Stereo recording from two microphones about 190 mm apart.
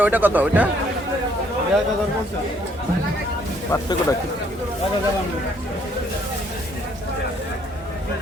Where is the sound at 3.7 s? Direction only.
15° left (ahead or behind).